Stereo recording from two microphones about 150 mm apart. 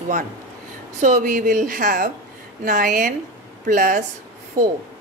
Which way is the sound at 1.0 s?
55° right (ahead or behind).